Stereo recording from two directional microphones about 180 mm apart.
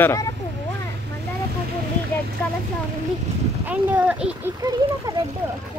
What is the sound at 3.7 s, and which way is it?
Speech, 10° right (ahead or behind).